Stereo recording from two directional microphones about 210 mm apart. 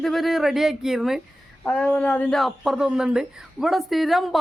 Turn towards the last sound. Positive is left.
turn(degrees=0)  # may be behind; listen again after turning